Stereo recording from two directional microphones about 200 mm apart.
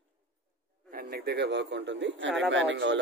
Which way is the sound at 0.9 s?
50° right (ahead or behind).